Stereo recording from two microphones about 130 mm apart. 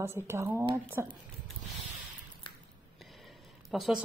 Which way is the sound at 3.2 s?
Centre (ahead or behind).